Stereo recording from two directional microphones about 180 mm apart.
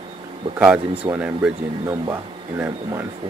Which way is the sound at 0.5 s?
10° right (ahead or behind).